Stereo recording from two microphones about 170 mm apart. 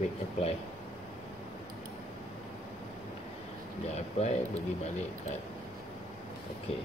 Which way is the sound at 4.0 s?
40° left (ahead or behind).